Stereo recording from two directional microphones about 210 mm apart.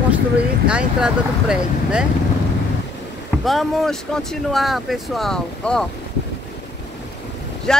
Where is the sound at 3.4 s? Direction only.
Centre (ahead or behind).